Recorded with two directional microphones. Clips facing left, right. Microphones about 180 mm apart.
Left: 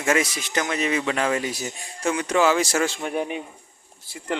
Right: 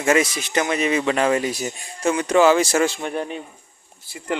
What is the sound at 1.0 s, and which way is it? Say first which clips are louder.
Speech: right 4 dB; 30° right (ahead or behind).